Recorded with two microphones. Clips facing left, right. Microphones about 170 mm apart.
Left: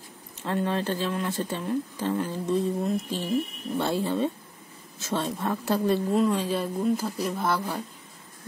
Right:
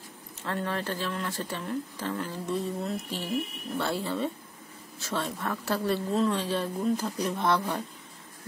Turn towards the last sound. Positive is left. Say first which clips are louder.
# right 1 dB
turn(degrees=5)  # may be behind; listen again after turning